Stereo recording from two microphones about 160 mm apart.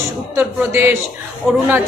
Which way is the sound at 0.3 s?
15° right (ahead or behind).